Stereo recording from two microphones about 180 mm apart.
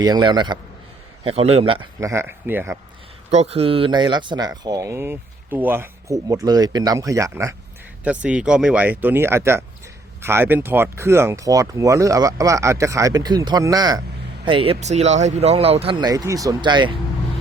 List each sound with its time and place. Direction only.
0.0 s speech: 20° right (ahead or behind)
2.0 s speech: 15° right (ahead or behind)
3.3 s speech: 35° right (ahead or behind)